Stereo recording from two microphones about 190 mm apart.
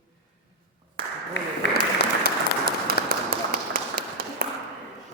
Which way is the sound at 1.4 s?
65° left (ahead or behind).